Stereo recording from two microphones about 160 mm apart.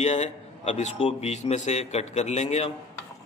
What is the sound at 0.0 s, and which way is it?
A man's voice, 45° left (ahead or behind).